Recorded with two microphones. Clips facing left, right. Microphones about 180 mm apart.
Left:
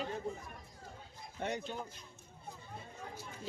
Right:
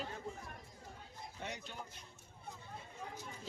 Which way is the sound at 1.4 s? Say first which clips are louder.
Left 9 dB; 55° left (ahead or behind).